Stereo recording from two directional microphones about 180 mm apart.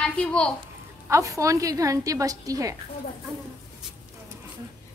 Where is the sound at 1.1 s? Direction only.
15° right (ahead or behind).